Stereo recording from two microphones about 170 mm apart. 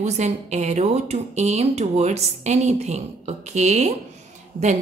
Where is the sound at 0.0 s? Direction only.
40° right (ahead or behind).